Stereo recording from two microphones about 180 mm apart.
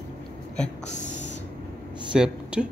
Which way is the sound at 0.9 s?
40° left (ahead or behind).